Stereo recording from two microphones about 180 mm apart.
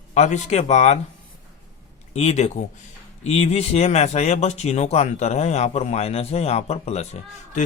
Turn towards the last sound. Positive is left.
turn(degrees=40)  # may be behind; listen again after turning